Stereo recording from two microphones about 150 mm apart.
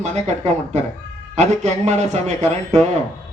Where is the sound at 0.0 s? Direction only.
50° right (ahead or behind).